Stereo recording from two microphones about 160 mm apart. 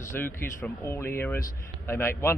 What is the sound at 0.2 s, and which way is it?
A man's voice, 15° left (ahead or behind).